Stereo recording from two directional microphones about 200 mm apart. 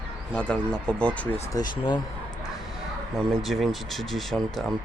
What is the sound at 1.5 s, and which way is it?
Speech, 15° left (ahead or behind).